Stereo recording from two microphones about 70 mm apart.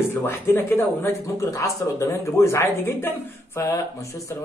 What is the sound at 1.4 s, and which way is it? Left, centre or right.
Speech, left.